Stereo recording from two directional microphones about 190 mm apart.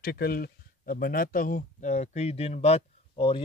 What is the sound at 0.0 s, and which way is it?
Speech, 55° left (ahead or behind).